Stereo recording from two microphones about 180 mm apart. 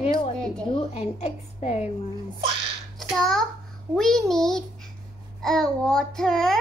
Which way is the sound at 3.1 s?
Centre (ahead or behind).